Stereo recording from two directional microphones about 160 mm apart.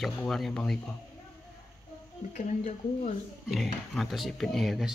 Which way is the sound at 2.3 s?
45° left (ahead or behind).